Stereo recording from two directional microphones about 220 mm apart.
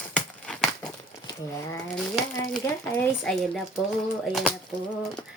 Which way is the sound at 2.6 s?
5° left (ahead or behind).